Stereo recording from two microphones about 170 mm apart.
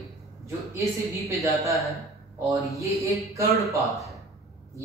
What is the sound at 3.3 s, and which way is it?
Speech, 20° right (ahead or behind).